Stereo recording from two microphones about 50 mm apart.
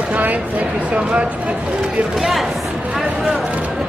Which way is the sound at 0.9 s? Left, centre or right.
Right.